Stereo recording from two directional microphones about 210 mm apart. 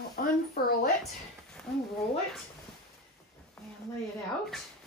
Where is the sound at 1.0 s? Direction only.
5° left (ahead or behind).